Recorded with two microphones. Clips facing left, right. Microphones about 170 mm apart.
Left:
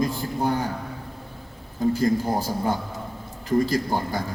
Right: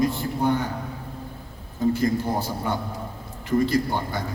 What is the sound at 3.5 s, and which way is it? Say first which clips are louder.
Speech: even; 40° left (ahead or behind).